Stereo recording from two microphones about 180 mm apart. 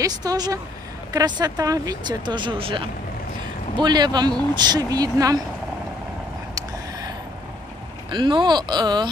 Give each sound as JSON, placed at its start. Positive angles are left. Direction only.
{"t": 0.0, "sound": "speech", "side_deg": -20}
{"t": 6.5, "sound": "vehicle", "side_deg": -20}
{"t": 8.1, "sound": "speech", "side_deg": -25}